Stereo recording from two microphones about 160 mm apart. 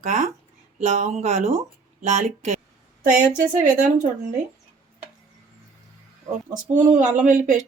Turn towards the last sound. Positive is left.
turn(degrees=-50)  # may be behind; listen again after turning